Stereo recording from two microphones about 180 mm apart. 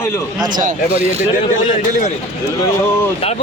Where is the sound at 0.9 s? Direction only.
35° right (ahead or behind).